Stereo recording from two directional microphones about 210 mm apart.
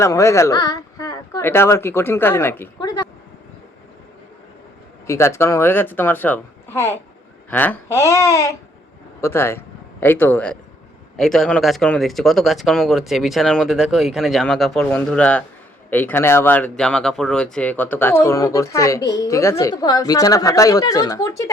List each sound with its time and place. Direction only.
0.0 s speech: 15° left (ahead or behind)
2.7 s a sound: 20° left (ahead or behind)
5.0 s speech: 10° left (ahead or behind)